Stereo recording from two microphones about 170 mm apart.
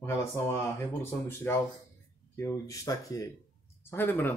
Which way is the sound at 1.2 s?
15° left (ahead or behind).